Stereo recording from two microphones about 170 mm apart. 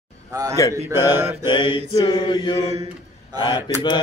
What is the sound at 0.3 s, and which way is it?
Speech, 20° right (ahead or behind).